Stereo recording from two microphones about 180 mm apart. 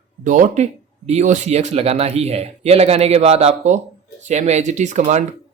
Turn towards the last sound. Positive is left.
turn(degrees=-40)  # may be behind; listen again after turning